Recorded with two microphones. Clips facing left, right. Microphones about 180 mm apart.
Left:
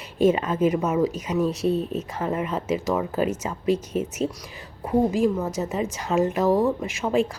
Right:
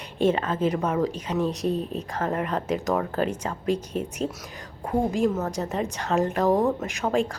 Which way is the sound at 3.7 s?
35° right (ahead or behind).